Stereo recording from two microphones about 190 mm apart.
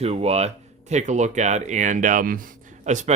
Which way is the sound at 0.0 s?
35° right (ahead or behind).